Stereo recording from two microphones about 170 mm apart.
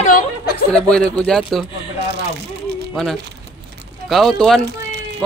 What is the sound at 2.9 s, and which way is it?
Speech, centre (ahead or behind).